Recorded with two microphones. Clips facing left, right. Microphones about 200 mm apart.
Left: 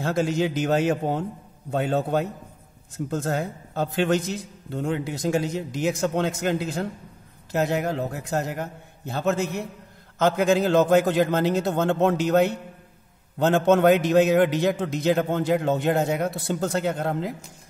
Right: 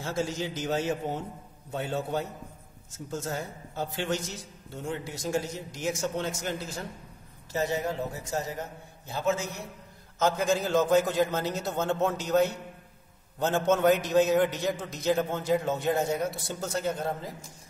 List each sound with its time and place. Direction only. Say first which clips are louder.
0.0 s a man's voice: left 8 dB; 60° left (ahead or behind)